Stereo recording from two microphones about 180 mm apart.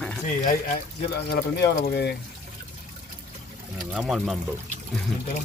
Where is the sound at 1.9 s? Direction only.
65° left (ahead or behind).